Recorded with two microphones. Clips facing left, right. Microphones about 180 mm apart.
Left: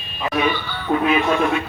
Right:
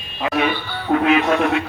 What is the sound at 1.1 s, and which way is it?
Speech, 80° right.